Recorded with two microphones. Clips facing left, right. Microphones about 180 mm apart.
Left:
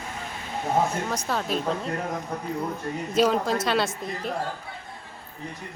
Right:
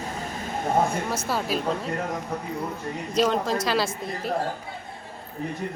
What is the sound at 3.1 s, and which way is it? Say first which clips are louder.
Speech: left 1 dB; centre (ahead or behind).